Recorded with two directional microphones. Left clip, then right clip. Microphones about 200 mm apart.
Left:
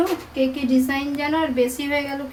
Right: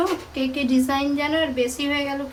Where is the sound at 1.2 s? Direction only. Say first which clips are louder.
Left 1 dB; 20° left (ahead or behind).